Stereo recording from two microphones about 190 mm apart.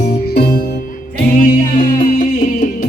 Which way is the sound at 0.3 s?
55° left (ahead or behind).